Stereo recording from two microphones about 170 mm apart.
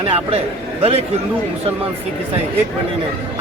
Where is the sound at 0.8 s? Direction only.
35° right (ahead or behind).